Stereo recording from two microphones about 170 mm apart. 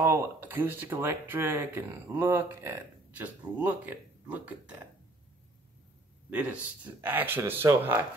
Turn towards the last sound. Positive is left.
turn(degrees=-15)  # may be behind; listen again after turning